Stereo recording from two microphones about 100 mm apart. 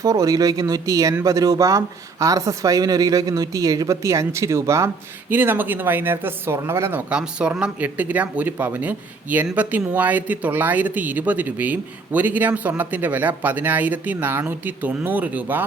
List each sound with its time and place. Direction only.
0.0 s speech: 35° right (ahead or behind)
5.3 s speech: 20° right (ahead or behind)
7.1 s speech: 10° right (ahead or behind)